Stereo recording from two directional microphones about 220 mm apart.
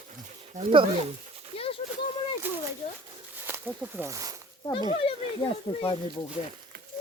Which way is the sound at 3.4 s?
10° right (ahead or behind).